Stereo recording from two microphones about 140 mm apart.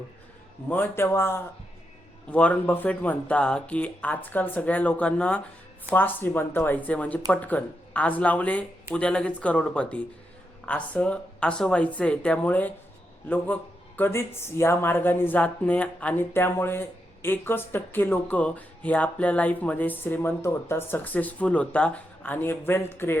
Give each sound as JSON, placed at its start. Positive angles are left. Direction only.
{"t": 0.7, "sound": "speech", "side_deg": 15}